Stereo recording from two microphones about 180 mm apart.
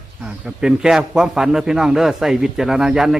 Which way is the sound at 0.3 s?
5° right (ahead or behind).